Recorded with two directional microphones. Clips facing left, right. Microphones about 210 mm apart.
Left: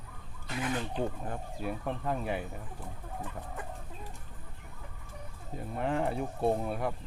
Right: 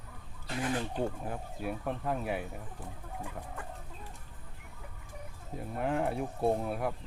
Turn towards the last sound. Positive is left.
turn(degrees=0)  # may be behind; listen again after turning